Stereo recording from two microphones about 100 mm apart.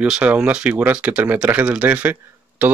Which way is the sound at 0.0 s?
10° right (ahead or behind).